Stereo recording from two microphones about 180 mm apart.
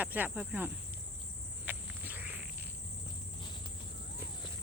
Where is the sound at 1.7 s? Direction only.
10° right (ahead or behind).